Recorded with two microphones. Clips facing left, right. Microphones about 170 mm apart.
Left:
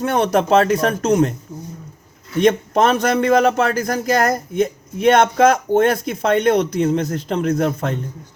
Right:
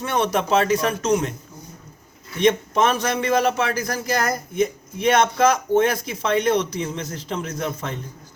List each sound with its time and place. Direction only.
0.0 s a man's voice: 50° left (ahead or behind)
2.4 s a man's voice: 55° left (ahead or behind)